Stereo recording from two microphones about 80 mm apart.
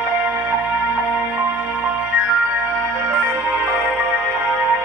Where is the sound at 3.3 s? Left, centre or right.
Right.